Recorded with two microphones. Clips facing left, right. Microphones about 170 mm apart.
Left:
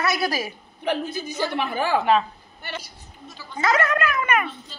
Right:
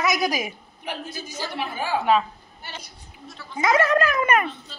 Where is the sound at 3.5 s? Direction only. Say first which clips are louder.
Right 2 dB; 15° right (ahead or behind).